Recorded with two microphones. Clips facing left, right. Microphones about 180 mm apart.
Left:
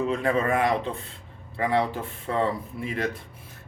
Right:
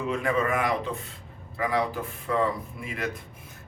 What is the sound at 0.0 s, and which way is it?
A man's voice, 30° left (ahead or behind).